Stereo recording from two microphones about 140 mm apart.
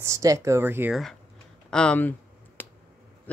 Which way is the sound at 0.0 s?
25° right (ahead or behind).